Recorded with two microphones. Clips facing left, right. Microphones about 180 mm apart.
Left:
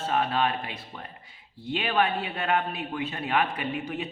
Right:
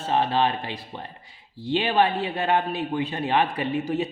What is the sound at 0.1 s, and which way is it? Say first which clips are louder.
A man's voice: right 4 dB; 30° right (ahead or behind).